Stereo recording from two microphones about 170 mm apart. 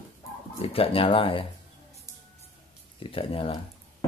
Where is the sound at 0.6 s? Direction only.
35° left (ahead or behind).